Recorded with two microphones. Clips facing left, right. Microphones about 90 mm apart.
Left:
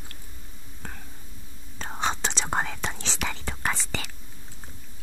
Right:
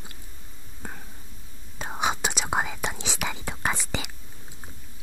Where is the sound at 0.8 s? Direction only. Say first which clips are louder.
Right 2 dB; 10° right (ahead or behind).